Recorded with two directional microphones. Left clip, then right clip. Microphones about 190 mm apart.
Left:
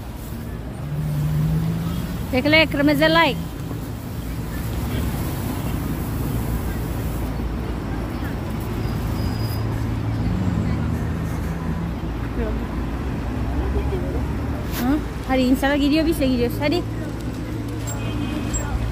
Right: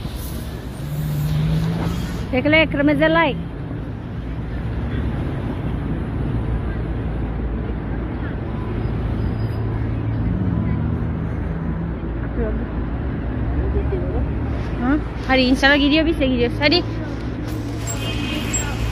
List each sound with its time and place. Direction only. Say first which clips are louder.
2.3 s speech: right 1 dB; 15° left (ahead or behind)
14.9 s a woman's voice: right 4 dB; 15° left (ahead or behind)